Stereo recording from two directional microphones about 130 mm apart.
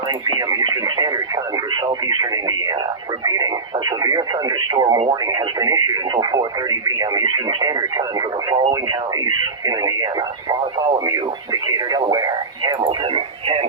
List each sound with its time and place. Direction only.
0.3 s radio: 30° right (ahead or behind)
1.7 s speech: 30° right (ahead or behind)